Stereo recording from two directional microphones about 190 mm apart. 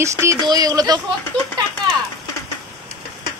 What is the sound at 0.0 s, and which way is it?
Speech, 15° right (ahead or behind).